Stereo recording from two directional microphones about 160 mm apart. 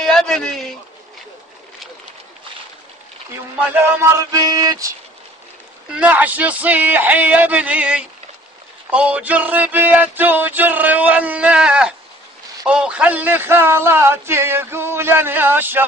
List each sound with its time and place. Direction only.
0.0 s a man's voice: centre (ahead or behind)
3.7 s a sound: 15° right (ahead or behind)
5.9 s a man's voice: 10° right (ahead or behind)